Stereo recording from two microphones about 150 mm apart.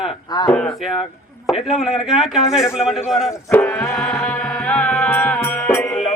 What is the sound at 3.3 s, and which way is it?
Speech, 15° left (ahead or behind).